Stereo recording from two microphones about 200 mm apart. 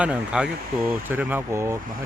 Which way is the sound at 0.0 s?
5° right (ahead or behind).